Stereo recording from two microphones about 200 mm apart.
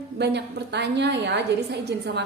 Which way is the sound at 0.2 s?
55° right (ahead or behind).